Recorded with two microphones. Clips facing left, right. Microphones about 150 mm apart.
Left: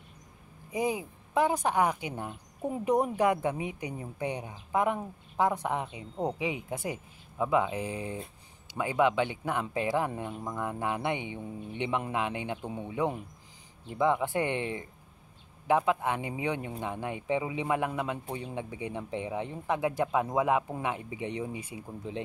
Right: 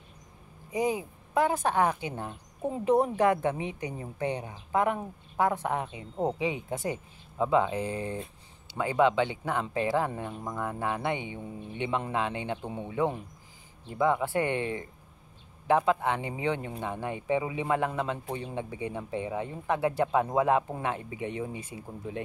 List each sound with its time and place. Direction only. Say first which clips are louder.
0.7 s a woman's voice: right 2 dB; 15° left (ahead or behind)
12.6 s speech: right 1 dB; 15° right (ahead or behind)
13.8 s a woman's voice: right 1 dB; 15° left (ahead or behind)